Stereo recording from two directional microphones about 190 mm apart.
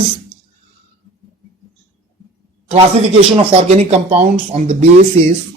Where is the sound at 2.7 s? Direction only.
25° right (ahead or behind).